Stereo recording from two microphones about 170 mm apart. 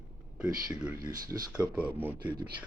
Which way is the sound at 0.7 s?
5° right (ahead or behind).